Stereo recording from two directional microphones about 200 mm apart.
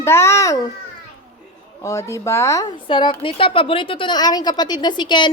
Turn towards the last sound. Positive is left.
turn(degrees=25)  # may be behind; listen again after turning